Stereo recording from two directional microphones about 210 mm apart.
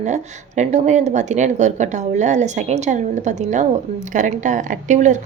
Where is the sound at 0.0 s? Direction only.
35° right (ahead or behind).